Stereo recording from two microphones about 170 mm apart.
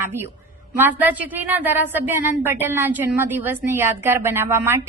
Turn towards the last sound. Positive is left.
turn(degrees=-15)  # may be behind; listen again after turning